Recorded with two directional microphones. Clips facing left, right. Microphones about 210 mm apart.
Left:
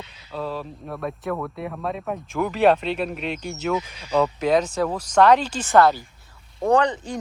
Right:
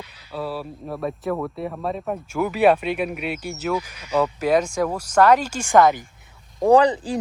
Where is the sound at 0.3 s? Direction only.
10° right (ahead or behind).